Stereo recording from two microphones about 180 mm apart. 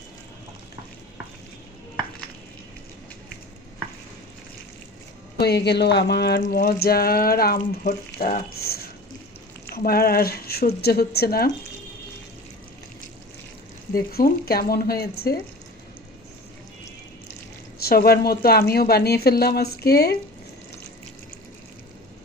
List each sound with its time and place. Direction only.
5.4 s speech: 65° left (ahead or behind)
13.9 s speech: 55° left (ahead or behind)
17.7 s speech: 60° left (ahead or behind)